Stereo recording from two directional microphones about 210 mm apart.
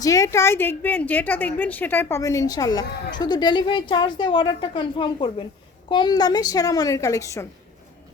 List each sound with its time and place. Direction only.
0.0 s a woman's voice: 15° left (ahead or behind)